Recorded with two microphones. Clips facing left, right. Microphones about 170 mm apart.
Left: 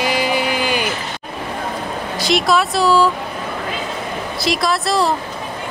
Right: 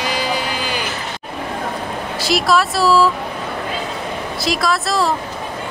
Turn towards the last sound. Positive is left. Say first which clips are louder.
# left 1 dB
turn(degrees=0)  # may be behind; listen again after turning